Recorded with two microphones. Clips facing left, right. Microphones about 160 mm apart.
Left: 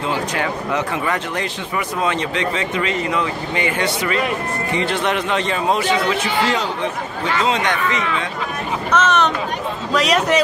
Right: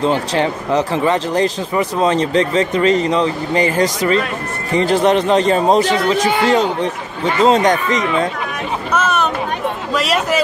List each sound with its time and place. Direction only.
0.0 s speech: 35° right (ahead or behind)
8.9 s a sound: 10° right (ahead or behind)
9.9 s a man's voice: 5° right (ahead or behind)